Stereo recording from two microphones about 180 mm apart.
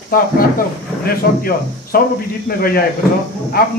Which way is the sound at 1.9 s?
55° left (ahead or behind).